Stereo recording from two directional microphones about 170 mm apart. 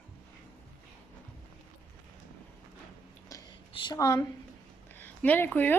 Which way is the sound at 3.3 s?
20° left (ahead or behind).